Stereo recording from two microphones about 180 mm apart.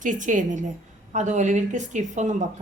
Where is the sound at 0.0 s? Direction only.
45° right (ahead or behind).